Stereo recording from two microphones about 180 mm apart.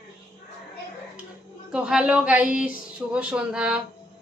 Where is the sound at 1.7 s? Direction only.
5° right (ahead or behind).